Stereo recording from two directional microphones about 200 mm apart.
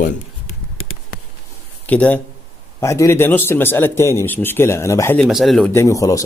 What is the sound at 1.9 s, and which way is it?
Speech, 5° left (ahead or behind).